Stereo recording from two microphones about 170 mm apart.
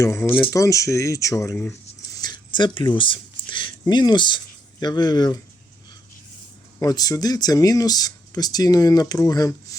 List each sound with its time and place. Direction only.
0.0 s speech: 15° left (ahead or behind)
2.1 s speech: 25° left (ahead or behind)
6.7 s speech: 20° left (ahead or behind)